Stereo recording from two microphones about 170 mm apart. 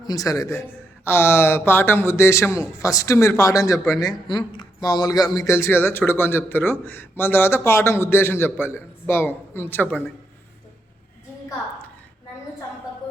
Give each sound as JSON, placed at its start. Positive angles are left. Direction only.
{"t": 0.0, "sound": "a man's voice", "side_deg": 20}